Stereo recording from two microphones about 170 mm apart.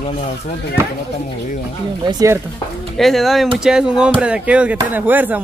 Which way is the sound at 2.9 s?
Centre (ahead or behind).